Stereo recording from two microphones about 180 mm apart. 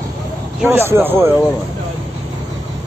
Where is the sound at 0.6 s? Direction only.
15° right (ahead or behind).